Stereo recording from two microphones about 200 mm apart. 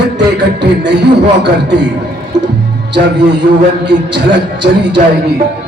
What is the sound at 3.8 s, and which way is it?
Speech, 60° right (ahead or behind).